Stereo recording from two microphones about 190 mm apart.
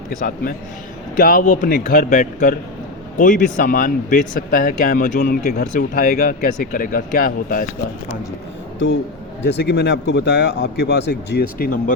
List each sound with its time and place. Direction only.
0.2 s speech: 50° left (ahead or behind)
9.4 s a man's voice: 60° left (ahead or behind)